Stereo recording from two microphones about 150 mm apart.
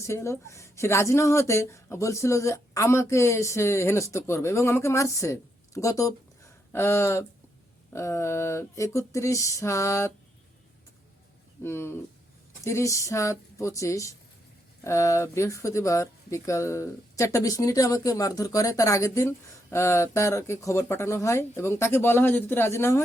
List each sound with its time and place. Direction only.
0.0 s speech: 20° left (ahead or behind)
11.6 s speech: 15° left (ahead or behind)